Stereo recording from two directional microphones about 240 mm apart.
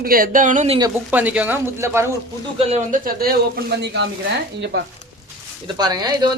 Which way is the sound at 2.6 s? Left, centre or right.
Right.